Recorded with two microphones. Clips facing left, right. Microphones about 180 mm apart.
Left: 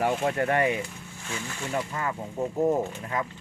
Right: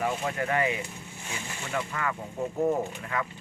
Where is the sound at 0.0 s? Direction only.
50° left (ahead or behind).